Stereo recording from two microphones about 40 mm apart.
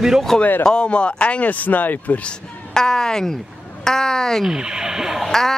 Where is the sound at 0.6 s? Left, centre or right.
Left.